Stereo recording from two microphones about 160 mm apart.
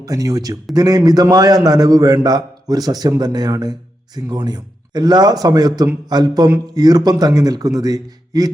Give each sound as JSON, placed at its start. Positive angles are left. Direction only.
{"t": 0.0, "sound": "a man's voice", "side_deg": -20}